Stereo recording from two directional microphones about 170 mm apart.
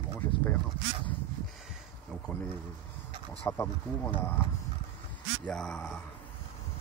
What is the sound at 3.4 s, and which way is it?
Speech, 15° left (ahead or behind).